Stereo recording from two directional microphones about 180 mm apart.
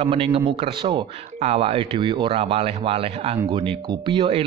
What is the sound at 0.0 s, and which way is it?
Speech, 30° right (ahead or behind).